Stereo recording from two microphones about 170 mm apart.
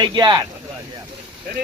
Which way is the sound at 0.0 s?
25° right (ahead or behind).